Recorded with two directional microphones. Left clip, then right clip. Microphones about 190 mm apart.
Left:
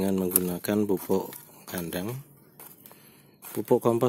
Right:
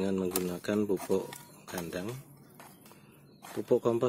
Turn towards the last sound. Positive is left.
turn(degrees=45)  # may be behind; listen again after turning